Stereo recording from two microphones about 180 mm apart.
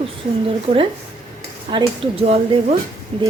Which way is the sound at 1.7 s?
35° right (ahead or behind).